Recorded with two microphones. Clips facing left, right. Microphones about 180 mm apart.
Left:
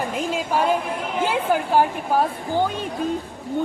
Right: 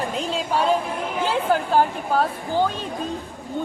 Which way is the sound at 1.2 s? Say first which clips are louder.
Even; 10° left (ahead or behind).